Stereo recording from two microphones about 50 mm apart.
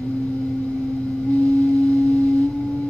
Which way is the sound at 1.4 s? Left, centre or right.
Left.